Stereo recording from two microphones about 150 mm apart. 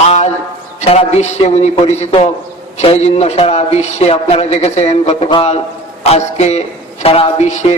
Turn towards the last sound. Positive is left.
turn(degrees=50)  # may be behind; listen again after turning